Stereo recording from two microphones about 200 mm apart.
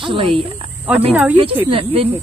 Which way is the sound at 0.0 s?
25° right (ahead or behind).